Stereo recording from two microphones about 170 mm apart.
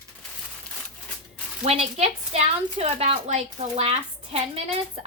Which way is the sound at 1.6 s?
40° right (ahead or behind).